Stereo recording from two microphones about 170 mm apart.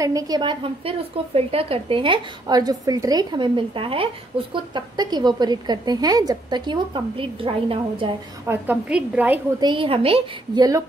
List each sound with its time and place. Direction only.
0.0 s a woman's voice: 20° right (ahead or behind)
8.5 s a woman's voice: 10° right (ahead or behind)
9.6 s a woman's voice: 30° right (ahead or behind)